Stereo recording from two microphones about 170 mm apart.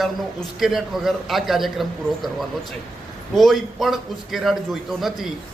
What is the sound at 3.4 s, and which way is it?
A man's voice, centre (ahead or behind).